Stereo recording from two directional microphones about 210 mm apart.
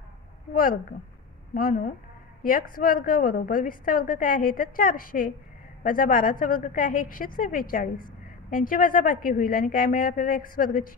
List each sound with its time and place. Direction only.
1.5 s a woman's voice: 40° left (ahead or behind)